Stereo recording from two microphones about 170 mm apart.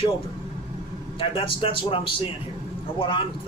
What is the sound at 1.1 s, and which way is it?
A man's voice, 30° left (ahead or behind).